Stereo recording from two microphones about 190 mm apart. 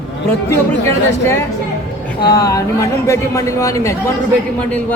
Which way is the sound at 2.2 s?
15° left (ahead or behind).